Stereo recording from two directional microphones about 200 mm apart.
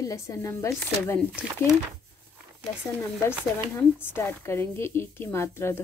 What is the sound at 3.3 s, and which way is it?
Speech, 10° left (ahead or behind).